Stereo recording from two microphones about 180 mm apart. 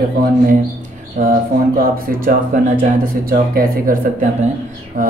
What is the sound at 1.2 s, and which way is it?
Speech, 50° right (ahead or behind).